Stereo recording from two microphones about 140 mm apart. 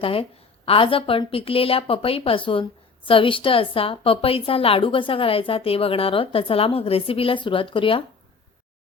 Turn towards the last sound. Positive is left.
turn(degrees=40)  # may be behind; listen again after turning